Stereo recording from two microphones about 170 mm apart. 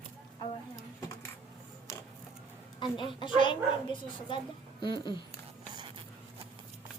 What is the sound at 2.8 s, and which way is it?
Speech, 30° left (ahead or behind).